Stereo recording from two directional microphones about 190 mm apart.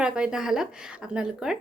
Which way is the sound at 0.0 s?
5° right (ahead or behind).